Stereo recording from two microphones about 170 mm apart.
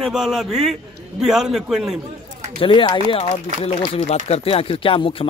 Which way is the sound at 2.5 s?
30° left (ahead or behind).